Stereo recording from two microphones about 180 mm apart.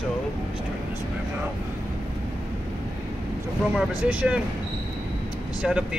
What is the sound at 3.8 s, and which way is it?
Speech, 5° right (ahead or behind).